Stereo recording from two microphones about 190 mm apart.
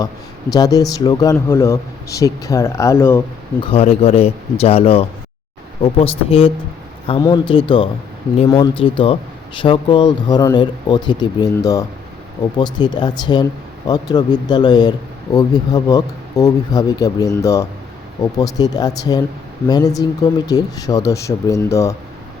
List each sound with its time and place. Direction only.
0.5 s speech: 20° left (ahead or behind)
3.6 s speech: 30° left (ahead or behind)